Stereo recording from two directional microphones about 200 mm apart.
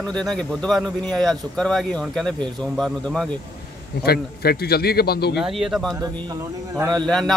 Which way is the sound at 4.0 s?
50° left (ahead or behind).